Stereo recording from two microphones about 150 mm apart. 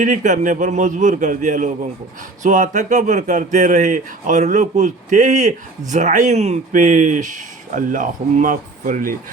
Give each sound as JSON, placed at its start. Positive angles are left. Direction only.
{"t": 0.0, "sound": "speech", "side_deg": -55}